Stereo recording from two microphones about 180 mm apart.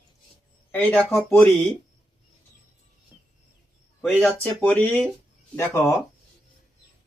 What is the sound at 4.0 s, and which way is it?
Speech, 5° left (ahead or behind).